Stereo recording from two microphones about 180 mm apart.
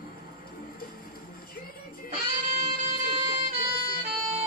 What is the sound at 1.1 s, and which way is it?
Music, 55° left (ahead or behind).